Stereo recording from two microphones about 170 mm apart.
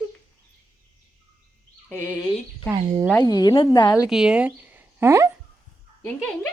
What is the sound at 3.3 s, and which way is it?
Speech, 25° left (ahead or behind).